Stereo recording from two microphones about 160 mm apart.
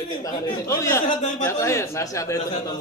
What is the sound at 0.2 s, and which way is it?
Speech, 20° left (ahead or behind).